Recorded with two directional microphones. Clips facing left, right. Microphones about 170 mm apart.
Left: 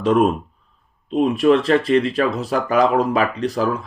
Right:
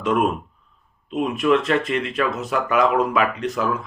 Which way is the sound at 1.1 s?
35° left (ahead or behind).